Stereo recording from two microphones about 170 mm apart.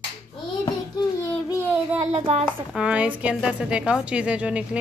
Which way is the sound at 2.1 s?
35° right (ahead or behind).